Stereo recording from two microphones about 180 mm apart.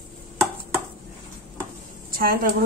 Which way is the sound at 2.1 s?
55° right (ahead or behind).